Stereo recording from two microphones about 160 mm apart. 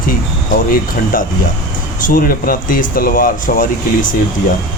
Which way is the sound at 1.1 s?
60° left (ahead or behind).